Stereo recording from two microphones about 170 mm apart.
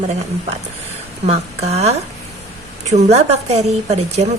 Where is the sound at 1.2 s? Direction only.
40° right (ahead or behind).